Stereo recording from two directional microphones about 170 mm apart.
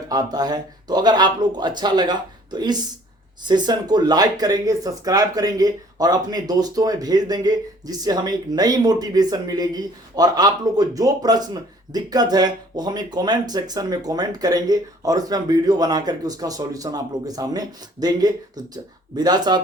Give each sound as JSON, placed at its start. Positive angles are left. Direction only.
{"t": 0.1, "sound": "speech", "side_deg": -25}